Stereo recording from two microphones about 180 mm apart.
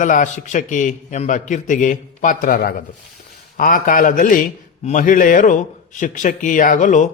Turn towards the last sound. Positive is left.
turn(degrees=45)  # may be behind; listen again after turning